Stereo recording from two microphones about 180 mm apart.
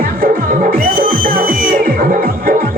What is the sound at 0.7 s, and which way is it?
Music, 50° right (ahead or behind).